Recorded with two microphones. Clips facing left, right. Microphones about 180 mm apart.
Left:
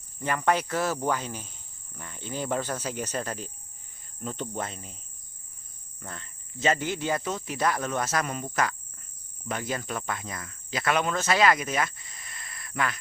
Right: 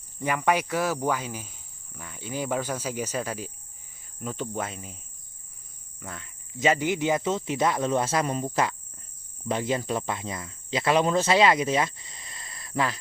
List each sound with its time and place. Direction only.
0.2 s cricket: 10° right (ahead or behind)
6.0 s speech: 5° right (ahead or behind); by 13.0 s 30° right (ahead or behind)